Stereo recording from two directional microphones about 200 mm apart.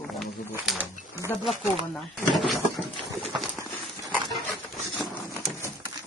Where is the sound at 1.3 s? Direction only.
10° left (ahead or behind).